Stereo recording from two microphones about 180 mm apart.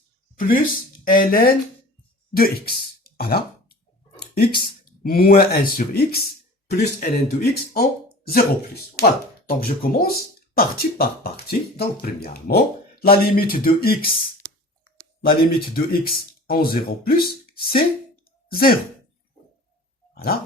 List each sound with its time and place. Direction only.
0.3 s speech: 50° left (ahead or behind)
4.2 s a sound: 60° left (ahead or behind)
4.6 s speech: 55° left (ahead or behind)
9.0 s speech: 60° left (ahead or behind)
15.2 s speech: 55° left (ahead or behind)
20.1 s dog: 60° left (ahead or behind)